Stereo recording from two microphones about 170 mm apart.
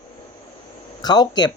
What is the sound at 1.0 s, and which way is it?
Speech, 25° left (ahead or behind).